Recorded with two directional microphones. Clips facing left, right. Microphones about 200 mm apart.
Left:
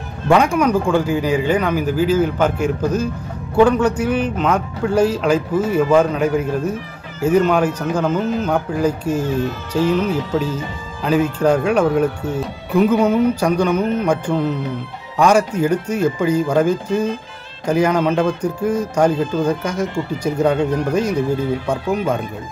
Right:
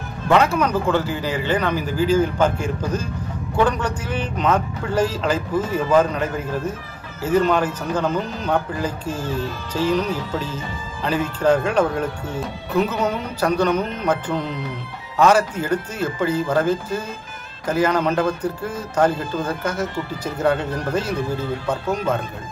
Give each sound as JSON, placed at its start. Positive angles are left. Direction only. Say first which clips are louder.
{"t": 0.3, "sound": "a man's voice", "louder": "left 3 dB", "side_deg": 10}